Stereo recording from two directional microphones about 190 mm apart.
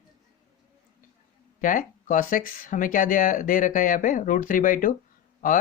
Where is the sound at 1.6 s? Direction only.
45° left (ahead or behind).